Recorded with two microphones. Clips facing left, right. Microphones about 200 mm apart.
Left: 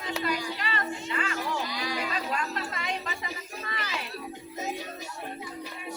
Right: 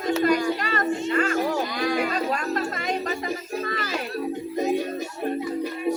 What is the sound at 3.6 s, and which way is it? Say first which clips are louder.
Music: right 5 dB; 45° right (ahead or behind).